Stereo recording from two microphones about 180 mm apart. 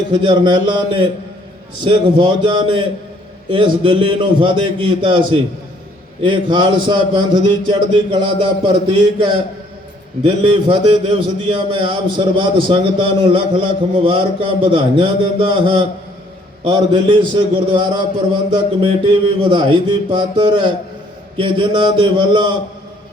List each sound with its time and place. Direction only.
0.1 s a man's voice: 25° right (ahead or behind)